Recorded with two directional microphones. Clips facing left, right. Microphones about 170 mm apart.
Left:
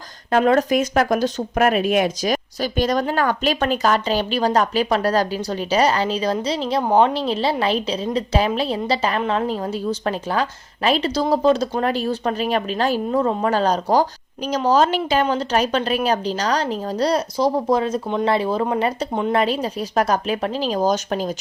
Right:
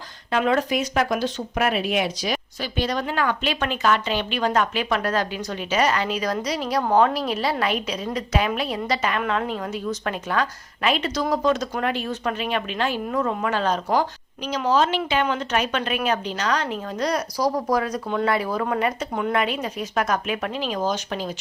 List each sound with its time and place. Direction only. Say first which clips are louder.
0.3 s speech: left 5 dB; 45° left (ahead or behind)
10.8 s speech: left 4 dB; 35° left (ahead or behind)